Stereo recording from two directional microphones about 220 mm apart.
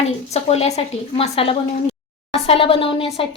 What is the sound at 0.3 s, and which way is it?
A woman's voice, 30° left (ahead or behind).